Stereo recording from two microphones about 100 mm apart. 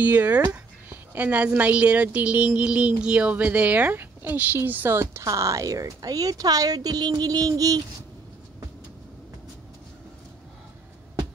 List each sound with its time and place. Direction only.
0.0 s a woman's voice: 15° right (ahead or behind); by 7.8 s 35° right (ahead or behind)